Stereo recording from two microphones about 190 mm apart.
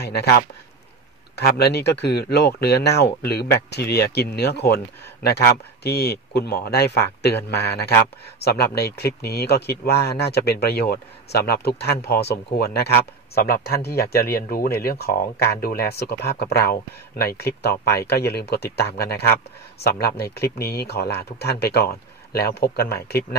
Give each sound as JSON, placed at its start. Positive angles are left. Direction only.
{"t": 0.0, "sound": "speech", "side_deg": 60}